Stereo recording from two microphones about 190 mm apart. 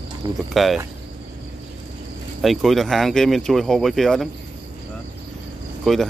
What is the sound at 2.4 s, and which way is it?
Speech, centre (ahead or behind).